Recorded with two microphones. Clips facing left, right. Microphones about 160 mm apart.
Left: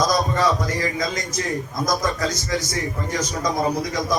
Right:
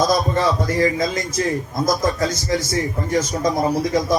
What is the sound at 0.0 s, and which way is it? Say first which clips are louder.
A man's voice: right 2 dB; 25° right (ahead or behind).